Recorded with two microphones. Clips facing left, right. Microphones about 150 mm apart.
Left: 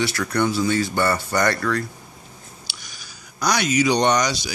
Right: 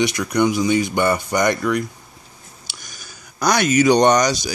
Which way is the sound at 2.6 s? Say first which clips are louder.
Right 1 dB; 45° right (ahead or behind).